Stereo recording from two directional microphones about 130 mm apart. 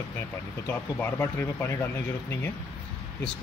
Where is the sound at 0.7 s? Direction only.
20° left (ahead or behind).